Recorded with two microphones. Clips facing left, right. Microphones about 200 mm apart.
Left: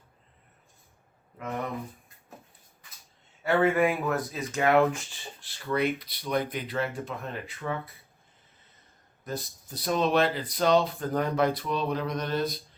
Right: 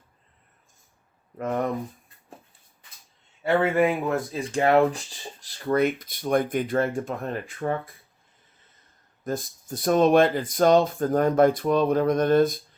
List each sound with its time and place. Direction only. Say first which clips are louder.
1.4 s speech: right 7 dB; 50° right (ahead or behind)
3.4 s speech: right 2 dB; 25° right (ahead or behind); by 7.8 s 50° right (ahead or behind)
9.2 s speech: right 6 dB; 50° right (ahead or behind)